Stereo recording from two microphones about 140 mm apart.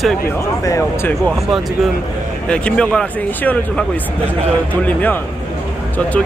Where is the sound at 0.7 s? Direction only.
20° left (ahead or behind).